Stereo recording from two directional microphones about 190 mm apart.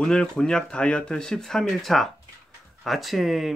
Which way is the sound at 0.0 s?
5° left (ahead or behind).